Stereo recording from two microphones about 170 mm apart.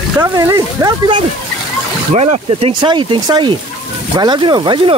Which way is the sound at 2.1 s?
40° right (ahead or behind).